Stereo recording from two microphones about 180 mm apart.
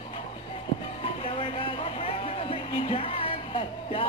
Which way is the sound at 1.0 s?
30° left (ahead or behind).